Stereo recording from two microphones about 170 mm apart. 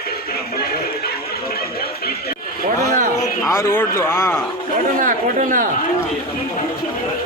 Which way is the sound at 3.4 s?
15° left (ahead or behind).